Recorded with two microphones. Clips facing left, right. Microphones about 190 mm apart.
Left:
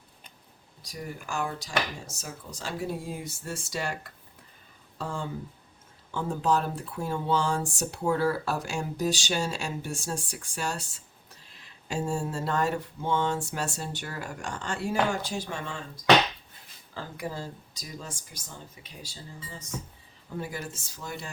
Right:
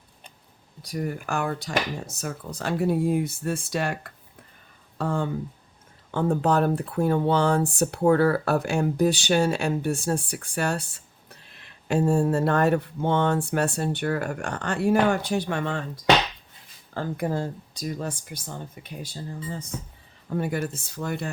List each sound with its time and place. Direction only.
0.8 s speech: 60° right (ahead or behind)
16.9 s speech: 55° right (ahead or behind)